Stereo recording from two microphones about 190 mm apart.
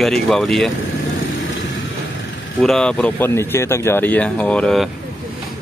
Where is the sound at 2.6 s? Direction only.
5° left (ahead or behind).